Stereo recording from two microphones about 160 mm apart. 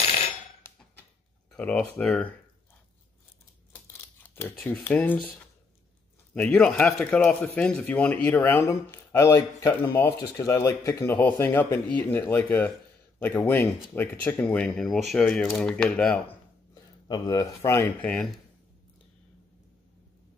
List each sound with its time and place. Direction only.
1.5 s speech: 5° left (ahead or behind)
3.7 s a sound: 15° left (ahead or behind)
4.6 s speech: 5° left (ahead or behind)
6.3 s speech: 5° left (ahead or behind)
17.1 s speech: 25° left (ahead or behind)
17.6 s speech: 15° left (ahead or behind)